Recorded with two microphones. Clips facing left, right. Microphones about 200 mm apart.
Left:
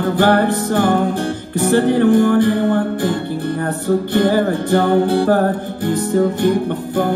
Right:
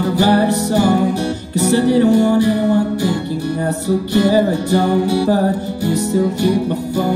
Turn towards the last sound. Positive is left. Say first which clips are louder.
# right 1 dB
turn(degrees=55)  # may be behind; listen again after turning